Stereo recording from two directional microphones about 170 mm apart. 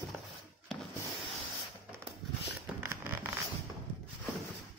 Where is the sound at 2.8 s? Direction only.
10° right (ahead or behind).